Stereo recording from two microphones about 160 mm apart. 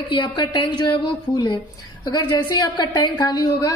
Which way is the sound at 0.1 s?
30° left (ahead or behind).